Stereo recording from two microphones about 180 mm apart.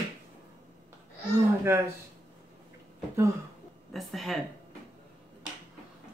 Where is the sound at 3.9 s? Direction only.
Centre (ahead or behind).